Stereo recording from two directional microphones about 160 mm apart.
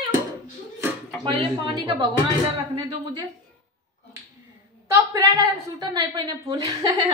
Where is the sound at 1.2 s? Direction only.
30° right (ahead or behind).